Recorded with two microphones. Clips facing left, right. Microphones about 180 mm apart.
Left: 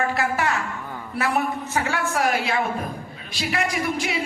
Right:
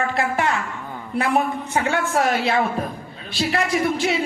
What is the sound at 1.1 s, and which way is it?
A woman's voice, 20° right (ahead or behind).